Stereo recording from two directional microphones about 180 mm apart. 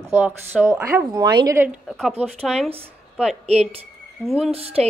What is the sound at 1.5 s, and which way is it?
Speech, 10° right (ahead or behind).